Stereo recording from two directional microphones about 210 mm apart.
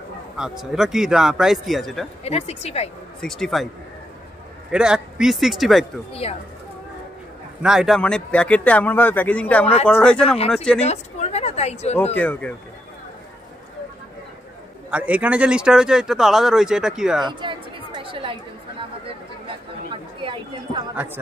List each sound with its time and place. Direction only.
0.4 s speech: centre (ahead or behind)
2.2 s a woman's voice: 30° left (ahead or behind)
3.2 s speech: centre (ahead or behind)
4.6 s speech: 5° right (ahead or behind)
7.6 s speech: centre (ahead or behind)
10.8 s speech: 30° left (ahead or behind)
12.0 s speech: 10° left (ahead or behind)
14.9 s speech: 5° right (ahead or behind)
17.2 s chatter: 20° right (ahead or behind)
19.9 s chatter: 25° right (ahead or behind)
20.9 s speech: 5° right (ahead or behind)